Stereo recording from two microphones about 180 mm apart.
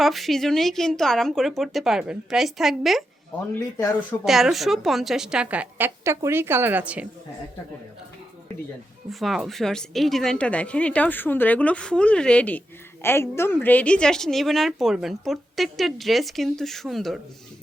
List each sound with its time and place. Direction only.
0.0 s a woman's voice: centre (ahead or behind)
3.5 s speech: 20° left (ahead or behind)
4.3 s a woman's voice: centre (ahead or behind)
9.0 s a woman's voice: centre (ahead or behind)